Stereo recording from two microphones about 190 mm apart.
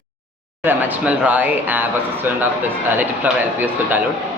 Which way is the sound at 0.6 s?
10° right (ahead or behind).